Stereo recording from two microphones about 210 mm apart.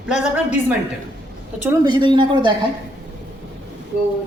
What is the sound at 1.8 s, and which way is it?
Speech, 20° right (ahead or behind).